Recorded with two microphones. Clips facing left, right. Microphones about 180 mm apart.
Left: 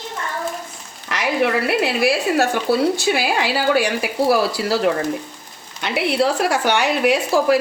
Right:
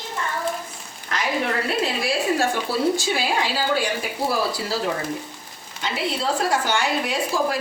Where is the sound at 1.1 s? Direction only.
70° left (ahead or behind).